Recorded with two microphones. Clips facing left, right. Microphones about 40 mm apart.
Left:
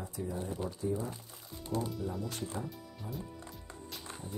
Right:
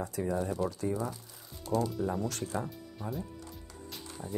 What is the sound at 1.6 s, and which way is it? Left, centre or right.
Speech, left.